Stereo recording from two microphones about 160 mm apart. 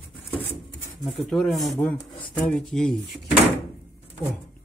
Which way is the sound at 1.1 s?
Centre (ahead or behind).